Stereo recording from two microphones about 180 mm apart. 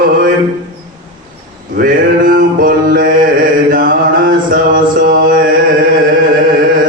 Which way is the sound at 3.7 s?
50° right (ahead or behind).